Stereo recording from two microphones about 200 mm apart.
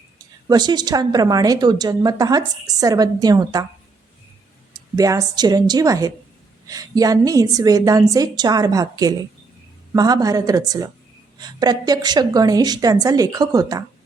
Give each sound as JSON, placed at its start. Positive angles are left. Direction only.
{"t": 0.4, "sound": "a woman's voice", "side_deg": -20}
{"t": 4.9, "sound": "a woman's voice", "side_deg": -15}